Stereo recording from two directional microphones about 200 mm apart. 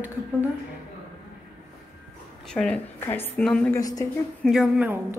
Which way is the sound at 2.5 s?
5° left (ahead or behind).